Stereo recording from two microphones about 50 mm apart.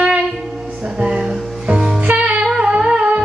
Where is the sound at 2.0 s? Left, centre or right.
Right.